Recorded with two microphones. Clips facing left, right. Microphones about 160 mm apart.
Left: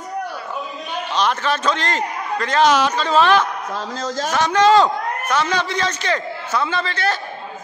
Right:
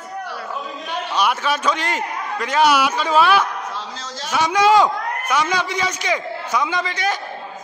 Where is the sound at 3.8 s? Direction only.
45° left (ahead or behind).